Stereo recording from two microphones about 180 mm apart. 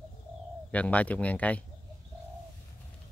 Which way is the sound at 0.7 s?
10° left (ahead or behind).